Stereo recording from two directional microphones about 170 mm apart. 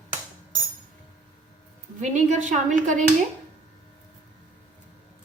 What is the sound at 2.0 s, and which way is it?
A woman's voice, 45° right (ahead or behind).